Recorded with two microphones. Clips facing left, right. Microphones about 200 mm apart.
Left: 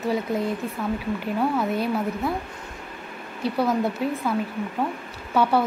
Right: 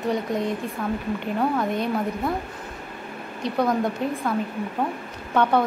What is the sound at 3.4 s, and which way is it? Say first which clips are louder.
Speech: even; 5° left (ahead or behind).